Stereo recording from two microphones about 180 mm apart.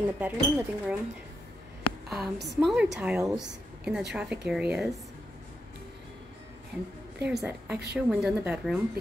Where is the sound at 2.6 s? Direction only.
Centre (ahead or behind).